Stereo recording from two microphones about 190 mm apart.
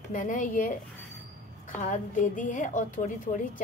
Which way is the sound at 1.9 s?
40° left (ahead or behind).